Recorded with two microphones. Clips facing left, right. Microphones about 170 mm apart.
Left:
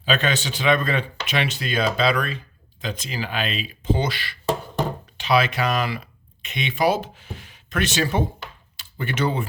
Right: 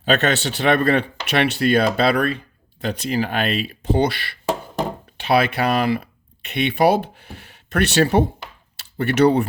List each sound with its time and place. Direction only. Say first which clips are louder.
0.0 s speech: right 4 dB; 65° right (ahead or behind)